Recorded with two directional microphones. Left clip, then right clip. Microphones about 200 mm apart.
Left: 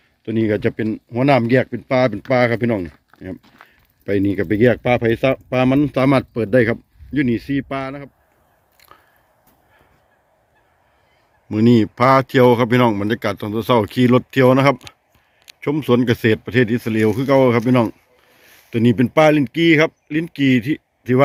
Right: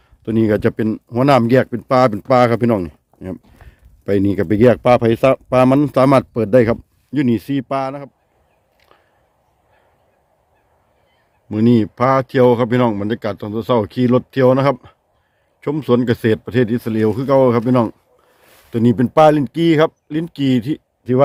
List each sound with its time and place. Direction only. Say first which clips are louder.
0.3 s speech: right 3 dB; 25° right (ahead or behind)
8.8 s chewing: left 5 dB; centre (ahead or behind)
11.4 s speech: even; 5° left (ahead or behind)